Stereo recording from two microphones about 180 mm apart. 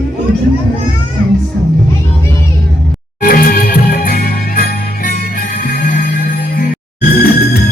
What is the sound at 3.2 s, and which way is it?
Music, 55° left (ahead or behind).